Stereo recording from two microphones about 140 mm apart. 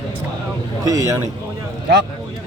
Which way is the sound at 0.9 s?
25° right (ahead or behind).